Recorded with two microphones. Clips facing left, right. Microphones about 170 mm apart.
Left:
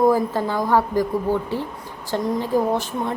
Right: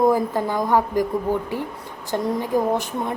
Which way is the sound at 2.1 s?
15° right (ahead or behind).